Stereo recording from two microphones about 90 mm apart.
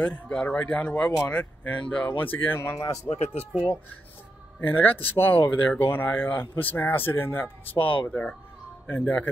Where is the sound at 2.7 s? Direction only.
40° left (ahead or behind).